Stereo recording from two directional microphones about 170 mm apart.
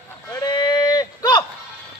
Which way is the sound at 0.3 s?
25° left (ahead or behind).